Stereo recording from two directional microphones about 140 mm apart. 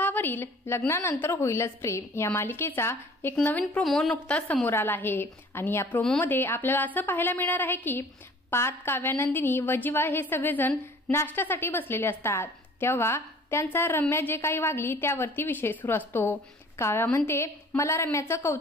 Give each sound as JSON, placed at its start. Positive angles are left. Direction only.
{"t": 0.0, "sound": "a woman's voice", "side_deg": 15}